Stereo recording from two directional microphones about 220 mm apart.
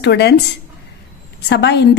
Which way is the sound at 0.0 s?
50° left (ahead or behind).